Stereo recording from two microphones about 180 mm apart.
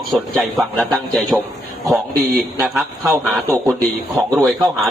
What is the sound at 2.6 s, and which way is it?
Speech, centre (ahead or behind).